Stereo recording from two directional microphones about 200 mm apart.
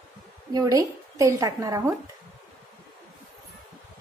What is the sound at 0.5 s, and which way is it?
A woman's voice, 15° right (ahead or behind).